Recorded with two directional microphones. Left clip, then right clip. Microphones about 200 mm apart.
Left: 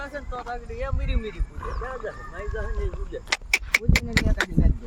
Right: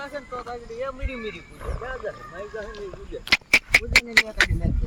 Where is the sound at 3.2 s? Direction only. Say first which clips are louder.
Right 6 dB; 10° left (ahead or behind).